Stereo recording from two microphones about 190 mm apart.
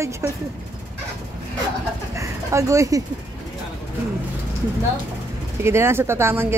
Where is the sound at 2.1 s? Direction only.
15° right (ahead or behind).